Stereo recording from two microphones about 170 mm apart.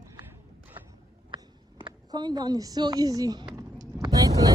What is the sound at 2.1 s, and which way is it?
A woman's voice, 25° right (ahead or behind).